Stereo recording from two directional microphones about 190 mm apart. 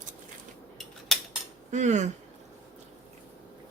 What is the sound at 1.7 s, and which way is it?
Speech, 40° right (ahead or behind).